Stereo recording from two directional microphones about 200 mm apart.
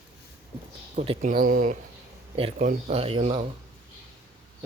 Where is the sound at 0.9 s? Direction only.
30° right (ahead or behind).